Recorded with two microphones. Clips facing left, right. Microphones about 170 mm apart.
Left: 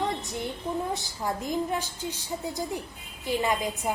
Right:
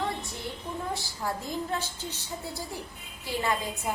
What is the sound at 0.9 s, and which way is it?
A woman's voice, 20° left (ahead or behind).